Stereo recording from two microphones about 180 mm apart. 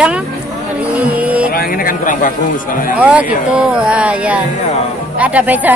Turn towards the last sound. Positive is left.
turn(degrees=-10)  # may be behind; listen again after turning